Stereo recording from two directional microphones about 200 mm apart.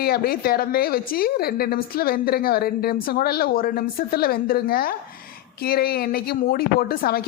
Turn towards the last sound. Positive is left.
turn(degrees=50)  # may be behind; listen again after turning